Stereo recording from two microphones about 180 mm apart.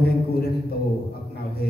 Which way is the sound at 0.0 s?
60° left (ahead or behind).